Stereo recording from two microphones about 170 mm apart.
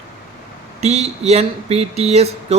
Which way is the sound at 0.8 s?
40° right (ahead or behind).